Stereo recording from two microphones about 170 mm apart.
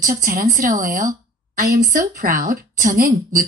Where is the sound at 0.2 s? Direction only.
55° right (ahead or behind).